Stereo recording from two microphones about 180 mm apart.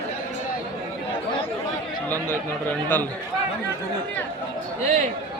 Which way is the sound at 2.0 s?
10° left (ahead or behind).